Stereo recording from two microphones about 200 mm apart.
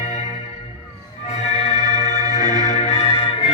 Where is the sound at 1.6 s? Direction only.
35° left (ahead or behind).